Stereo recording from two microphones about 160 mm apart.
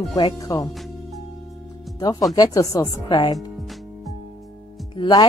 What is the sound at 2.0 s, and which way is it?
A woman's voice, 25° left (ahead or behind).